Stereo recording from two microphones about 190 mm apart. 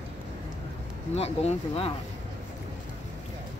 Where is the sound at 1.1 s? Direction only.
30° left (ahead or behind).